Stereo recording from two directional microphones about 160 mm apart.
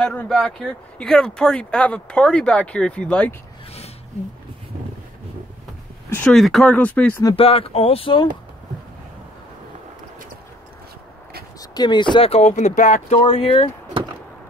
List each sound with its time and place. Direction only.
0.0 s speech: 5° left (ahead or behind)
6.0 s a sound: 15° left (ahead or behind)
6.3 s speech: centre (ahead or behind)
7.3 s speech: 35° left (ahead or behind)
11.7 s speech: 25° left (ahead or behind)